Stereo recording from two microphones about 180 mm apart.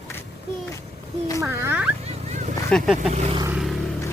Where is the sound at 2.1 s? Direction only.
40° right (ahead or behind).